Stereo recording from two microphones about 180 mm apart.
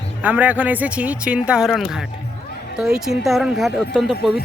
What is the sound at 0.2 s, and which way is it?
Speech, 10° right (ahead or behind).